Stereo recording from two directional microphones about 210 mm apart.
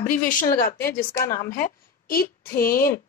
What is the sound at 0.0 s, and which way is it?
A woman's voice, 40° left (ahead or behind).